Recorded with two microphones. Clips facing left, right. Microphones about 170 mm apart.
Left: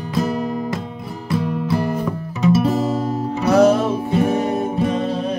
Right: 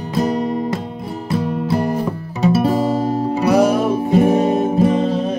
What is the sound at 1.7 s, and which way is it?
Music, 35° right (ahead or behind).